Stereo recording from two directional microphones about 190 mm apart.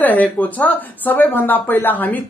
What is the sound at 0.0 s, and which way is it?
Speech, 10° left (ahead or behind).